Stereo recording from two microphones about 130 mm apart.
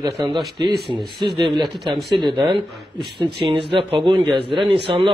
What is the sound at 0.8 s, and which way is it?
Speech, centre (ahead or behind).